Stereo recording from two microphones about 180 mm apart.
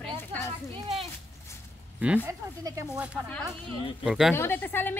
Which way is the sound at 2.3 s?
15° right (ahead or behind).